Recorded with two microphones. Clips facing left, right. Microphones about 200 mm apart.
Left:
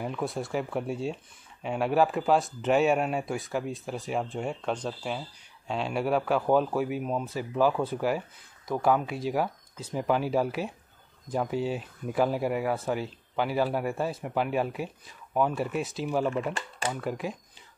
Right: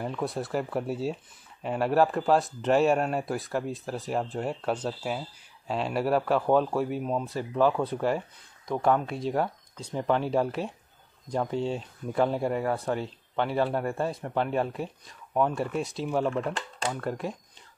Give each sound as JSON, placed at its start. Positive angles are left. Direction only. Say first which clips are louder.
{"t": 0.0, "sound": "speech", "louder": "right 1 dB", "side_deg": 0}